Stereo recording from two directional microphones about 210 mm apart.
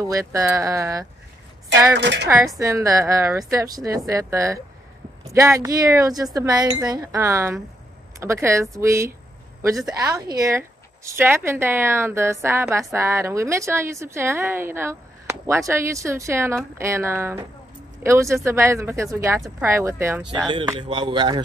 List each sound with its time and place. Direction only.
0.0 s a woman's voice: 15° right (ahead or behind)
2.0 s speech: 55° right (ahead or behind)
2.2 s a woman's voice: 10° right (ahead or behind)